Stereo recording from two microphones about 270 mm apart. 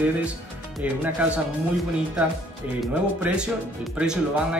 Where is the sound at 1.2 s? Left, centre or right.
Centre.